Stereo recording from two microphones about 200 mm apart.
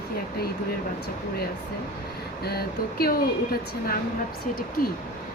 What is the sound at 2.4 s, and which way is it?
Speech, 50° left (ahead or behind).